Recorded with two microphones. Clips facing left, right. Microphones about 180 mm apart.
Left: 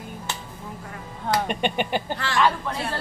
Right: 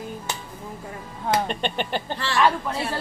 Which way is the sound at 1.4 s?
10° left (ahead or behind).